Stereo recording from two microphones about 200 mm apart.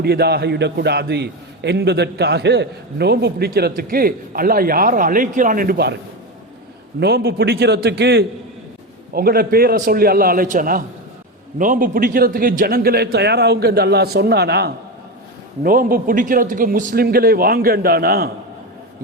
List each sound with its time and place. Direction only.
0.0 s a man's voice: 55° right (ahead or behind)
7.0 s a man's voice: 50° right (ahead or behind)